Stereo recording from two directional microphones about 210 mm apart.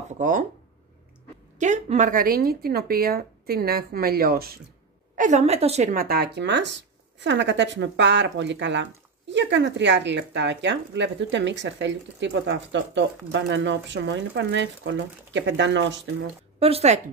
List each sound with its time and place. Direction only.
0.2 s speech: 40° right (ahead or behind)
1.6 s a woman's voice: 35° right (ahead or behind); by 16.0 s 60° right (ahead or behind)
16.5 s speech: 30° right (ahead or behind)